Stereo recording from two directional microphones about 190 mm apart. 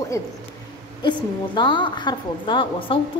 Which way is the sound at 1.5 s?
25° left (ahead or behind).